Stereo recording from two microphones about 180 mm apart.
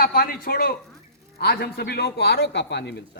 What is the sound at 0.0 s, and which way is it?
Speech, 55° left (ahead or behind).